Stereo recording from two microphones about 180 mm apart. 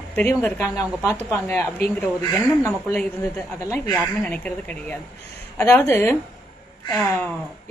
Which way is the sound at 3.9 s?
5° left (ahead or behind).